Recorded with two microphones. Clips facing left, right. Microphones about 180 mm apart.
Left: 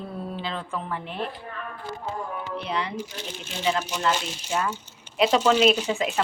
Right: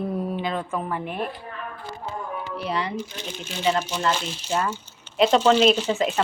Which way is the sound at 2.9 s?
10° left (ahead or behind).